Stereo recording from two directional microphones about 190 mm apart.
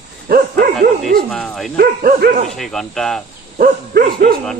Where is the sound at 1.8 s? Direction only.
50° right (ahead or behind).